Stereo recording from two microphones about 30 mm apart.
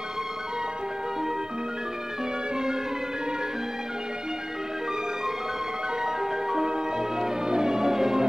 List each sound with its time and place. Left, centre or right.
6.0 s music: centre